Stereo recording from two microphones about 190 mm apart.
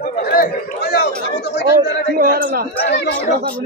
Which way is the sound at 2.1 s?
50° right (ahead or behind).